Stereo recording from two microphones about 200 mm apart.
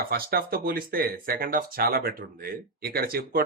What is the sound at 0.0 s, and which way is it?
Speech, 50° right (ahead or behind).